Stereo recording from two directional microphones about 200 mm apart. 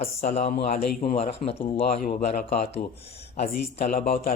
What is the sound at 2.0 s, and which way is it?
Speech, 45° left (ahead or behind).